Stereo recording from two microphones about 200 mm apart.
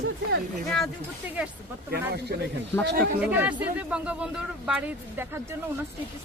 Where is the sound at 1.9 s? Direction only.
55° right (ahead or behind).